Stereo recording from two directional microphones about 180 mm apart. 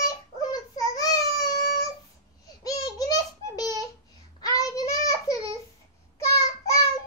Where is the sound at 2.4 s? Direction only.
20° left (ahead or behind).